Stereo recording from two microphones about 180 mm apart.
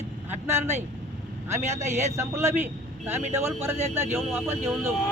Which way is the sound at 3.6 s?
15° right (ahead or behind).